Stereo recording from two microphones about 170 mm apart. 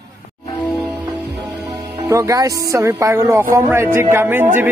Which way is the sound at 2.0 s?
20° right (ahead or behind).